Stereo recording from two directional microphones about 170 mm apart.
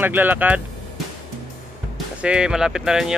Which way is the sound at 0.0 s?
10° right (ahead or behind).